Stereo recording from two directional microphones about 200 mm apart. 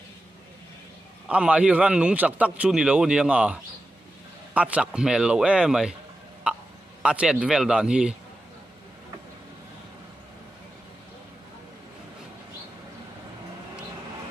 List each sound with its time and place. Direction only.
1.3 s a man's voice: 5° right (ahead or behind)
4.6 s a man's voice: 5° right (ahead or behind)
6.5 s a sound: 5° right (ahead or behind)
7.0 s a man's voice: 5° right (ahead or behind)